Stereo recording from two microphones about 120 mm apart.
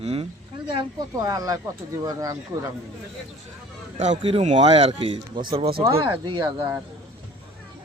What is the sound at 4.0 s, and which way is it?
Speech, 65° right (ahead or behind).